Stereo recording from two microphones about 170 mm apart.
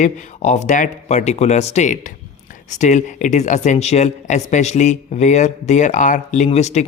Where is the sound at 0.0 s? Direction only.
45° left (ahead or behind).